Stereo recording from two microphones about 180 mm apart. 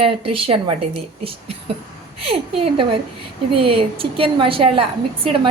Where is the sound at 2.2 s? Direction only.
30° right (ahead or behind).